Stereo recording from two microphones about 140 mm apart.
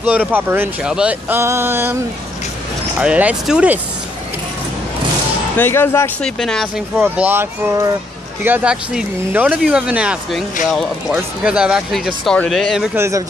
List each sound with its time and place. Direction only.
0.0 s speech: 10° right (ahead or behind)
1.4 s speech: 20° right (ahead or behind)
3.0 s speech: 10° right (ahead or behind)
5.6 s speech: 15° left (ahead or behind)
6.2 s speech: 5° left (ahead or behind)
7.2 s speech: 15° right (ahead or behind)
12.9 s speech: 20° right (ahead or behind)